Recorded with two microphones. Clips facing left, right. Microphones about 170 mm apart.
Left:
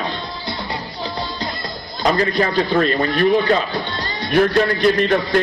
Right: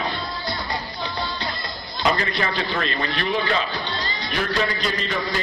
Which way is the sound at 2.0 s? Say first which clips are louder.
Left 6 dB; 40° left (ahead or behind).